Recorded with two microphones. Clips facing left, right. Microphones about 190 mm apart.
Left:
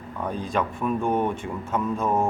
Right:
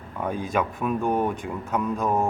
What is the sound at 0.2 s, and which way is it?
Speech, 10° right (ahead or behind).